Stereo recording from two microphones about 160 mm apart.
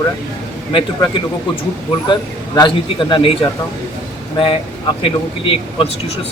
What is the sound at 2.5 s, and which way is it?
Speech, 30° left (ahead or behind).